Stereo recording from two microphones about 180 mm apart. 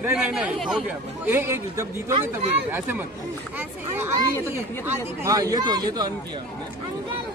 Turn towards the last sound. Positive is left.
turn(degrees=-25)  # may be behind; listen again after turning